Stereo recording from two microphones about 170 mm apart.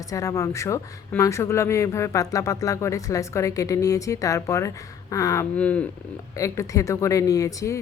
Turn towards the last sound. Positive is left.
turn(degrees=20)  # may be behind; listen again after turning